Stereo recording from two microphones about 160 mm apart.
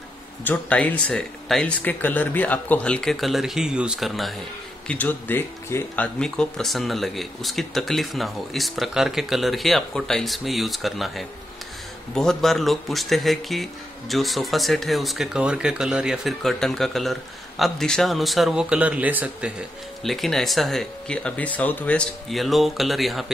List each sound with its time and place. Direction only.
0.4 s speech: 10° left (ahead or behind)
4.8 s speech: 10° left (ahead or behind); by 19.5 s 10° right (ahead or behind)
20.0 s speech: centre (ahead or behind)